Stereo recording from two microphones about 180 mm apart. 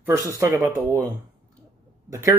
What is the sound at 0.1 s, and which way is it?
Speech, 15° right (ahead or behind).